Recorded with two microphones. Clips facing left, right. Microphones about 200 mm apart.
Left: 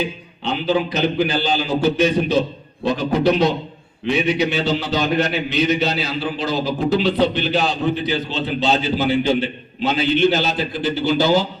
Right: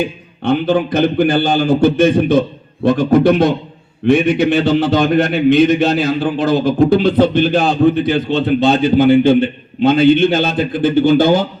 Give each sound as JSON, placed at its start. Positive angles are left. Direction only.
{"t": 0.0, "sound": "a man's voice", "side_deg": -55}